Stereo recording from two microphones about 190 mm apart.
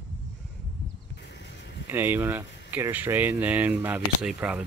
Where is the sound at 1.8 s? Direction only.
10° right (ahead or behind).